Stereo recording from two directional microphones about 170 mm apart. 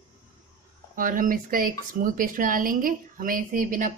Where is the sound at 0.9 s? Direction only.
55° right (ahead or behind).